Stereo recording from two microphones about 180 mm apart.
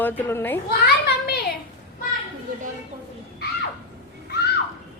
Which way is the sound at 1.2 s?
60° left (ahead or behind).